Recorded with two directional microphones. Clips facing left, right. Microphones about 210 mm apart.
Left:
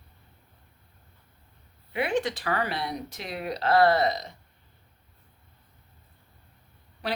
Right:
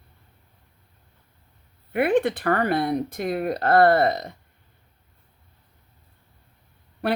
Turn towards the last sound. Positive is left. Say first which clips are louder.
# right 7 dB
turn(degrees=-60)  # may be behind; listen again after turning